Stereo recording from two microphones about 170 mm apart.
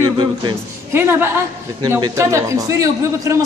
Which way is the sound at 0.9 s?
15° right (ahead or behind).